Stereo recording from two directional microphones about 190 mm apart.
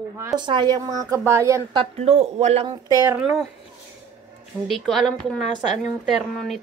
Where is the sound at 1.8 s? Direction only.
35° right (ahead or behind).